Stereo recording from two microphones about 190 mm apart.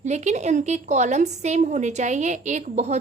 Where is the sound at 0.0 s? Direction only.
35° right (ahead or behind).